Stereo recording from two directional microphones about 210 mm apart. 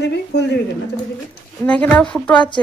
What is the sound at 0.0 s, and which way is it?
Speech, 55° left (ahead or behind).